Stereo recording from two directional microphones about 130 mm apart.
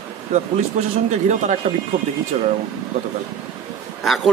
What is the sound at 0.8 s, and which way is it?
Speech, 65° right (ahead or behind).